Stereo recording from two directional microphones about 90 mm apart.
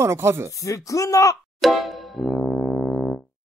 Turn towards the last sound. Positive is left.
turn(degrees=10)  # may be behind; listen again after turning